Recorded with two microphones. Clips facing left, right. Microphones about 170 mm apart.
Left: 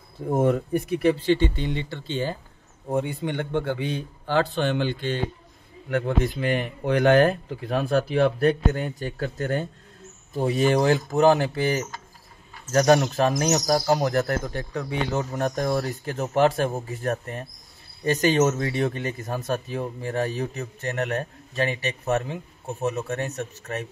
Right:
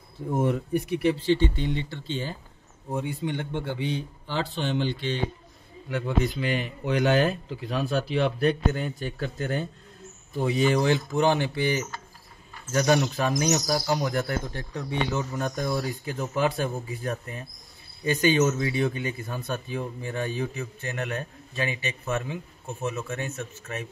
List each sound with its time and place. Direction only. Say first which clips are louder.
0.3 s speech: left 3 dB; 50° left (ahead or behind)
1.6 s a man's voice: left 1 dB; 70° left (ahead or behind); by 23.9 s 40° left (ahead or behind)